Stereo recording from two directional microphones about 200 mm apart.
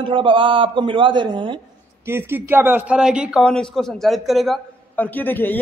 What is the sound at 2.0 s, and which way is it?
A man's voice, 10° right (ahead or behind).